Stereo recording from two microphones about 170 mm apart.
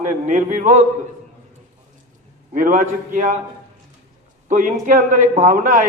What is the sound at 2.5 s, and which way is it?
Speech, 50° right (ahead or behind).